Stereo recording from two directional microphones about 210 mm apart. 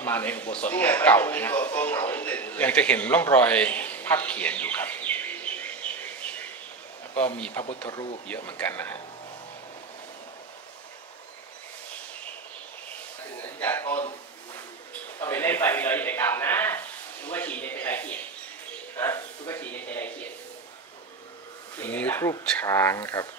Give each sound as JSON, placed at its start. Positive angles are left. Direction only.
{"t": 0.0, "sound": "speech", "side_deg": 10}
{"t": 7.9, "sound": "speech", "side_deg": 20}
{"t": 8.3, "sound": "speech", "side_deg": 10}
{"t": 13.4, "sound": "speech", "side_deg": 10}
{"t": 15.1, "sound": "speech", "side_deg": 10}
{"t": 21.7, "sound": "speech", "side_deg": 10}